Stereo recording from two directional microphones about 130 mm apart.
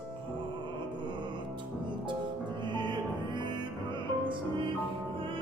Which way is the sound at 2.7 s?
35° right (ahead or behind).